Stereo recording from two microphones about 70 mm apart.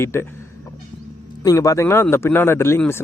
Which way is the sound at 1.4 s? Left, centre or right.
Left.